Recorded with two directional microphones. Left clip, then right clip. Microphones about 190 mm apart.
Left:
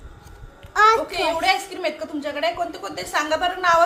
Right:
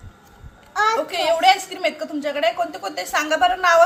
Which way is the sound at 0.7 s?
45° left (ahead or behind).